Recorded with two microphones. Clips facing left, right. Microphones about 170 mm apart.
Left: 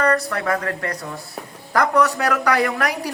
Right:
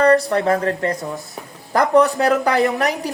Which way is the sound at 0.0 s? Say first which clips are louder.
Right 6 dB; 30° right (ahead or behind).